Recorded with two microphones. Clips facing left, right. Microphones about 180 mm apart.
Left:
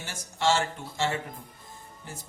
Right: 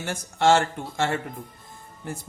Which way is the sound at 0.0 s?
55° right (ahead or behind).